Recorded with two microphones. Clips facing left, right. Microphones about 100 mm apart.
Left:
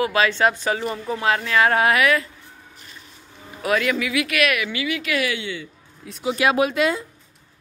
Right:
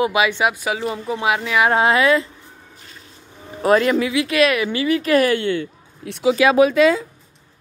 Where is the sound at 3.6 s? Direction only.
35° right (ahead or behind); by 6.3 s 70° right (ahead or behind).